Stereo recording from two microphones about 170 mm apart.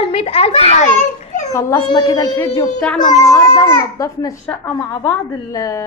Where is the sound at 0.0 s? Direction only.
35° left (ahead or behind).